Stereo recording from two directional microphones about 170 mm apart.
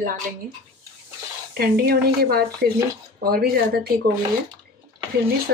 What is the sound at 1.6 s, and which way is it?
Speech, 65° right (ahead or behind).